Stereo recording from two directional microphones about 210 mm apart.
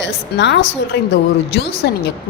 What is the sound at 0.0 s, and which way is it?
A woman's voice, 55° left (ahead or behind).